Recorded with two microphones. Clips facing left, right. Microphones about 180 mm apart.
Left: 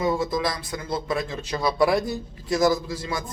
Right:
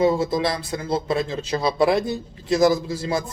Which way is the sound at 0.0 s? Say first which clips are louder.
Right 4 dB; 25° right (ahead or behind).